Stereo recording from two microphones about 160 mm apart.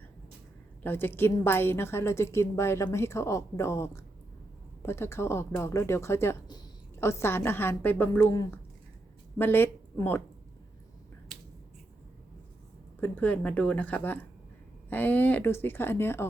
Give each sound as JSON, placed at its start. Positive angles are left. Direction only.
{"t": 0.8, "sound": "a woman's voice", "side_deg": 15}
{"t": 9.4, "sound": "speech", "side_deg": 15}
{"t": 13.0, "sound": "a woman's voice", "side_deg": 10}